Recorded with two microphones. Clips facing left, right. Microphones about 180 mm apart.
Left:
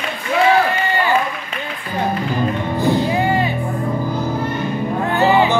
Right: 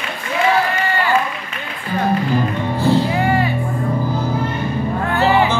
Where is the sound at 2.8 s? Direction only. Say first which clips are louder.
Right 1 dB; 20° left (ahead or behind).